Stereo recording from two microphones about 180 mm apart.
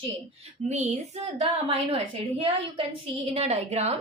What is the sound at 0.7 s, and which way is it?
Female singing, 40° right (ahead or behind).